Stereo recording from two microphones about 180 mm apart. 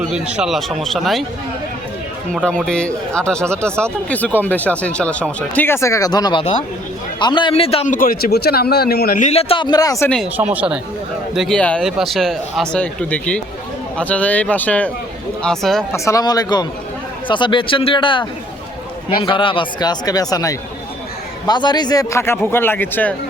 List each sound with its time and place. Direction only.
0.1 s speech: 5° right (ahead or behind)
2.3 s speech: 5° left (ahead or behind); by 7.9 s 30° left (ahead or behind)
7.9 s speech: 50° left (ahead or behind); by 10.1 s 20° left (ahead or behind)
10.3 s speech: 10° right (ahead or behind)
11.3 s speech: 5° left (ahead or behind)
15.9 s speech: 15° left (ahead or behind)